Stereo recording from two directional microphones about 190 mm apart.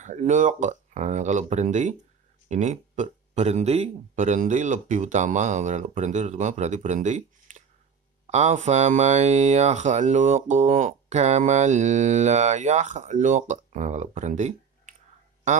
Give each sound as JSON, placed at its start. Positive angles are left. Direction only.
{"t": 0.0, "sound": "speech", "side_deg": -40}